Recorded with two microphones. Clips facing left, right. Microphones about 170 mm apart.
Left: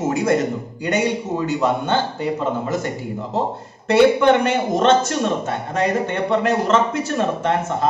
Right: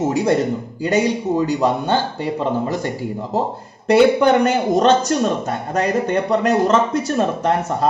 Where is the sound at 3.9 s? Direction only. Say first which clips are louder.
Right 1 dB; 40° right (ahead or behind).